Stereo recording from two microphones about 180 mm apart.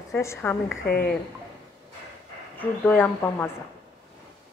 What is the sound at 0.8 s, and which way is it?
Speech, 60° left (ahead or behind).